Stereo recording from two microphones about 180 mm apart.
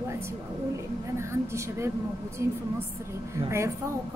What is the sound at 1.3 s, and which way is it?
A woman's voice, 15° right (ahead or behind).